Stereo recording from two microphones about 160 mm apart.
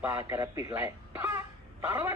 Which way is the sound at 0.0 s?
15° right (ahead or behind).